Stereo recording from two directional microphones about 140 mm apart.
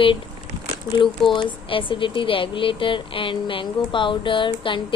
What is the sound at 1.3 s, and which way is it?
Speech, 35° left (ahead or behind).